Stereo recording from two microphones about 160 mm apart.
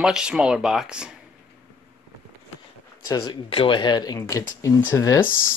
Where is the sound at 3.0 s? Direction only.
20° left (ahead or behind).